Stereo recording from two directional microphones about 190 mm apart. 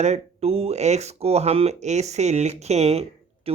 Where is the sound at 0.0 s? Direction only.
35° right (ahead or behind).